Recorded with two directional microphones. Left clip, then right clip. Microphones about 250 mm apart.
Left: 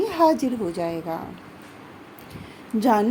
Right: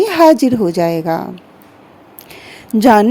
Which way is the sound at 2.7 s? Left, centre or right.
Right.